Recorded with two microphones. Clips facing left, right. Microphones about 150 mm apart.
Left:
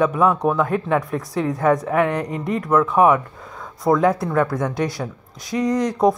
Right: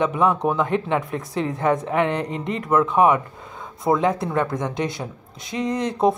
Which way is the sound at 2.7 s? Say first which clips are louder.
Left 1 dB; 5° right (ahead or behind).